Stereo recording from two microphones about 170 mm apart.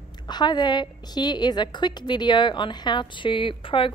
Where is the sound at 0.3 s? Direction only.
25° left (ahead or behind).